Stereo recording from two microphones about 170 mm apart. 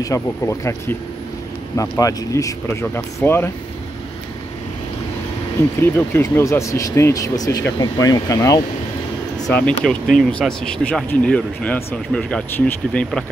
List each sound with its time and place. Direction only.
0.0 s speech: 20° left (ahead or behind)
5.8 s speech: 15° left (ahead or behind)
9.5 s speech: 10° left (ahead or behind)